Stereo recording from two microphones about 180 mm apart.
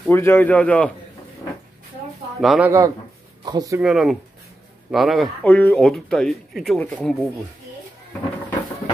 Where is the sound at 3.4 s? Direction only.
20° right (ahead or behind).